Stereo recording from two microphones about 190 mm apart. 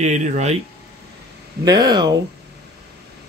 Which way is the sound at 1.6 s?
20° right (ahead or behind).